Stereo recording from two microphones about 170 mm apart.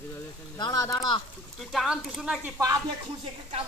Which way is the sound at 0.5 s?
25° left (ahead or behind).